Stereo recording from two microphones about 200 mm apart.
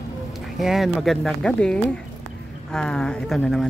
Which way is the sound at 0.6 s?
Centre (ahead or behind).